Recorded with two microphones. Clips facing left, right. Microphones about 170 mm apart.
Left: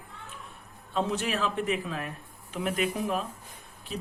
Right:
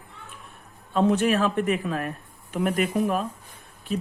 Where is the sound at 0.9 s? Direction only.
55° right (ahead or behind).